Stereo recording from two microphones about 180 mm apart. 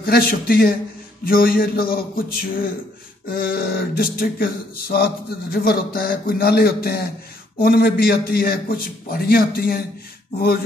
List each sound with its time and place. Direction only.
0.0 s speech: 55° left (ahead or behind)